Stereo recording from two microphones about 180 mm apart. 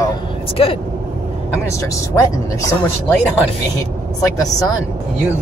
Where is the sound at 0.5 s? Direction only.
30° left (ahead or behind).